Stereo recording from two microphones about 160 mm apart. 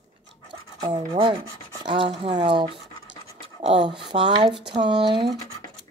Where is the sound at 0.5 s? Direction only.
30° right (ahead or behind).